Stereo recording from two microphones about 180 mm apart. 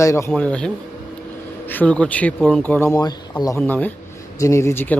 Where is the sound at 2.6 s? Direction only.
10° left (ahead or behind).